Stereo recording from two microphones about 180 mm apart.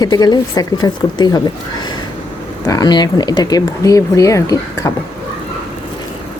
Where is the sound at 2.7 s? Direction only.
20° left (ahead or behind).